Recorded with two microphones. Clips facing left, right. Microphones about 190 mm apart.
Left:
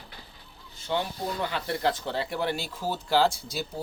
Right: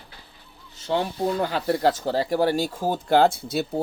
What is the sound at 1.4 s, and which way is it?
Speech, 40° right (ahead or behind).